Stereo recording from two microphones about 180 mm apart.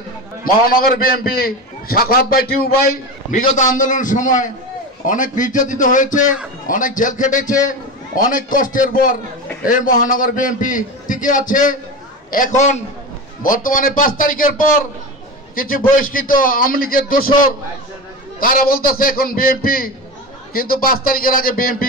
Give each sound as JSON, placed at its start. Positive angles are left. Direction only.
{"t": 0.4, "sound": "a man's voice", "side_deg": 55}
{"t": 18.4, "sound": "a man's voice", "side_deg": 50}